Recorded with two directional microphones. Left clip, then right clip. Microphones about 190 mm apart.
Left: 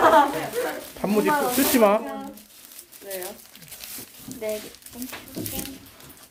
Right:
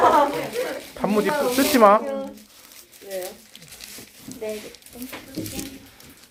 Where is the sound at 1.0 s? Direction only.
15° left (ahead or behind).